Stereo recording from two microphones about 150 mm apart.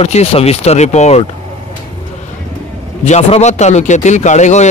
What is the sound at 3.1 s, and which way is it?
A man's voice, 45° left (ahead or behind).